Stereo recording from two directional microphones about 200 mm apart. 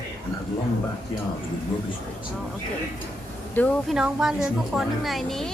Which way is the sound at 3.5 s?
10° left (ahead or behind).